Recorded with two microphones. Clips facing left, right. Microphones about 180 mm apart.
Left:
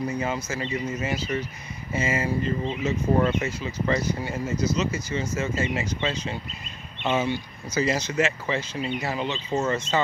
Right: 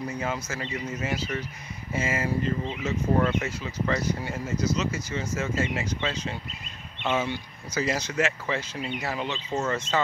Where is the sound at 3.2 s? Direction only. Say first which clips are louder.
Left 1 dB; 15° left (ahead or behind).